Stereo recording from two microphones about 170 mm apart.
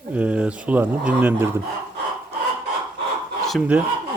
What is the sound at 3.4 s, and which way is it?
Speech, 5° right (ahead or behind).